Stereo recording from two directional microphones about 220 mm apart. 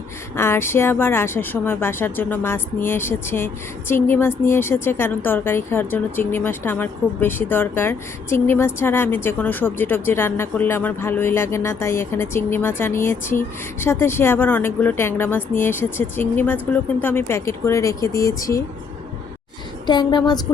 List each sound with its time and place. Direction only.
0.3 s speech: 10° left (ahead or behind)
19.9 s a woman's voice: 20° left (ahead or behind)